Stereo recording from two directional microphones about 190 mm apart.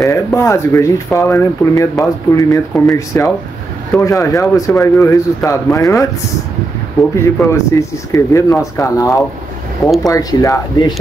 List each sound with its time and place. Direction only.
0.0 s speech: 15° left (ahead or behind)